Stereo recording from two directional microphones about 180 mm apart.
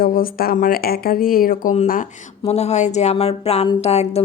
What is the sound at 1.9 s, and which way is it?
Speech, 40° left (ahead or behind).